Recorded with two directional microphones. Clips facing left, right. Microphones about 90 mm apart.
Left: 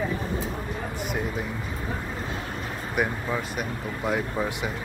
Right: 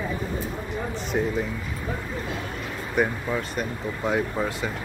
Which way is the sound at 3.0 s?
10° left (ahead or behind).